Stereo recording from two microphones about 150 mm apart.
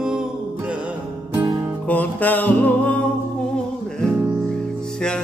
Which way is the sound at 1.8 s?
10° left (ahead or behind).